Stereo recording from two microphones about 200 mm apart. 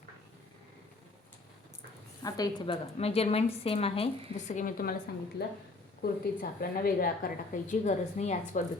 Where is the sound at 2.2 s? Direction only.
20° left (ahead or behind); by 4.9 s 45° left (ahead or behind).